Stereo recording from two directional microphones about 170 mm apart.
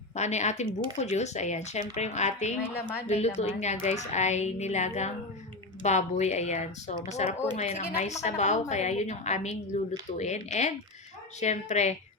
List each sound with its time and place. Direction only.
0.2 s a woman's voice: 40° left (ahead or behind)